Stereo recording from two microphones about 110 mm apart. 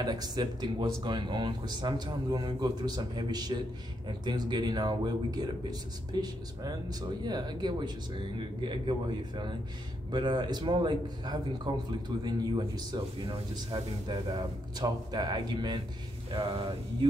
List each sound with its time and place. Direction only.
0.0 s a man's voice: 40° right (ahead or behind)
10.1 s a man's voice: 45° right (ahead or behind)